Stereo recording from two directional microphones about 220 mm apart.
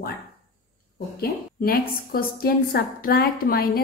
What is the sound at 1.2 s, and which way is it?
A woman's voice, 40° left (ahead or behind).